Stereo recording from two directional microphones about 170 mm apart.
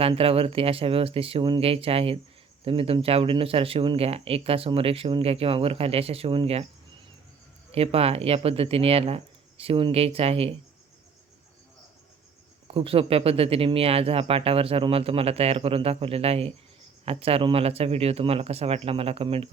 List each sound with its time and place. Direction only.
0.0 s speech: 35° right (ahead or behind)
7.7 s speech: 35° right (ahead or behind)
12.6 s speech: 35° right (ahead or behind)